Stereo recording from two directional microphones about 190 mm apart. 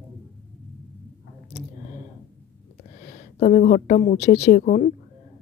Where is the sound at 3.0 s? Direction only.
40° left (ahead or behind).